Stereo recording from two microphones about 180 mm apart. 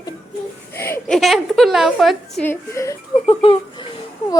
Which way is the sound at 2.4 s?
15° left (ahead or behind).